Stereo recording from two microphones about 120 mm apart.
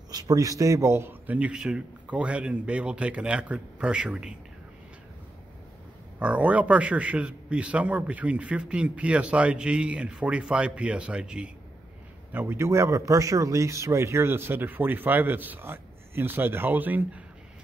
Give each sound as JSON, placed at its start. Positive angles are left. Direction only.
{"t": 0.1, "sound": "a man's voice", "side_deg": -30}
{"t": 6.1, "sound": "a man's voice", "side_deg": -10}